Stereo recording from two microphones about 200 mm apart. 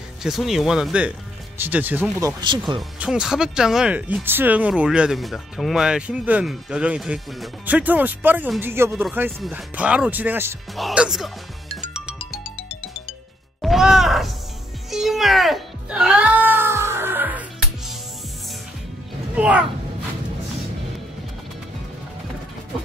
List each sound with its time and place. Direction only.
0.2 s speech: centre (ahead or behind); by 2.6 s 20° right (ahead or behind)
3.0 s speech: 5° right (ahead or behind)
13.6 s music: centre (ahead or behind)
19.3 s speech: 5° right (ahead or behind)